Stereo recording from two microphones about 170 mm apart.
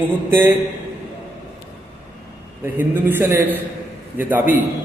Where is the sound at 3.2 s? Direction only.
15° right (ahead or behind).